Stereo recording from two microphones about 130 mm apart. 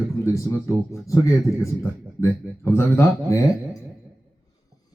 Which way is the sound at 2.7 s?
20° left (ahead or behind).